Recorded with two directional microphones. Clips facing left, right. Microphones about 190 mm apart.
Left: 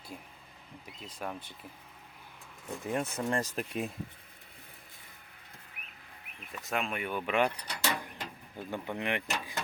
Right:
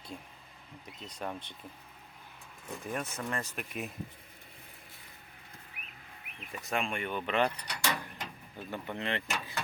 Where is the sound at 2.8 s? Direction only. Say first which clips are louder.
Left 5 dB; 25° left (ahead or behind).